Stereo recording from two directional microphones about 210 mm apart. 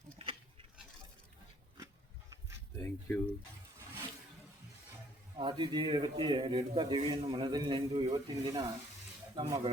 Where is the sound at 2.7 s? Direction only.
10° left (ahead or behind).